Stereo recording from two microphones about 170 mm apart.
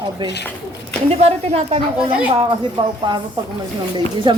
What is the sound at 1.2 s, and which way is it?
Speech, 40° right (ahead or behind).